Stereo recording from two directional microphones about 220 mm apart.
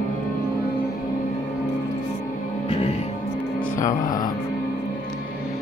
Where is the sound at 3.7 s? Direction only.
15° left (ahead or behind).